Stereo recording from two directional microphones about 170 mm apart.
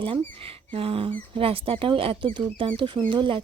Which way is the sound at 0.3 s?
35° right (ahead or behind).